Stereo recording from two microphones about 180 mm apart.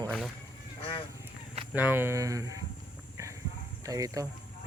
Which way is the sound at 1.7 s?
10° right (ahead or behind).